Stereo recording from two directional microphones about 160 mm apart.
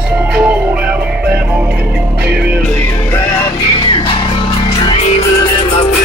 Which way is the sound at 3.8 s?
30° left (ahead or behind).